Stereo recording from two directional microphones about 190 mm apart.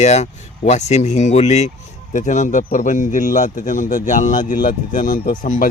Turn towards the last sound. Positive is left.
turn(degrees=45)  # may be behind; listen again after turning